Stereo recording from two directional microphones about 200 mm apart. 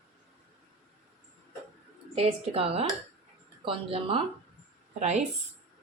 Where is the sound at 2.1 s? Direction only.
30° right (ahead or behind).